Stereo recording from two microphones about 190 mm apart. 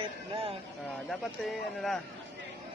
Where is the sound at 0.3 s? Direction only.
30° right (ahead or behind).